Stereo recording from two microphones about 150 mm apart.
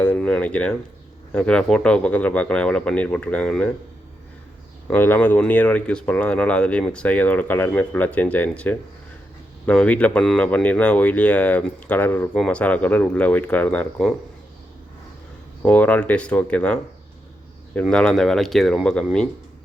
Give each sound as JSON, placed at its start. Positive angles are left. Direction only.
{"t": 0.0, "sound": "speech", "side_deg": 10}
{"t": 4.9, "sound": "speech", "side_deg": 10}
{"t": 15.6, "sound": "speech", "side_deg": 10}